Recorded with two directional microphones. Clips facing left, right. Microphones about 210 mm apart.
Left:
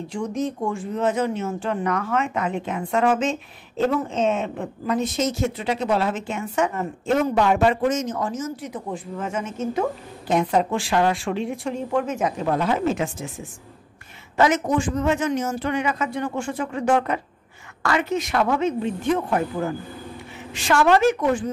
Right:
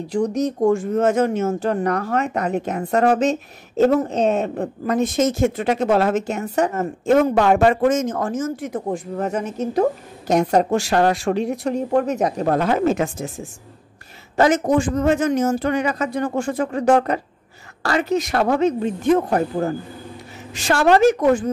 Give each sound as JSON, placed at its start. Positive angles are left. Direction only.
{"t": 0.1, "sound": "speech", "side_deg": -40}